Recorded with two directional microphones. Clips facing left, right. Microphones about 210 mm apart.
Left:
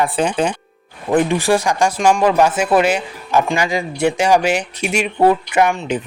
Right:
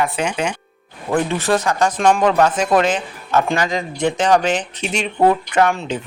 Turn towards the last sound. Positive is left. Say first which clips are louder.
# left 1 dB
turn(degrees=5)  # may be behind; listen again after turning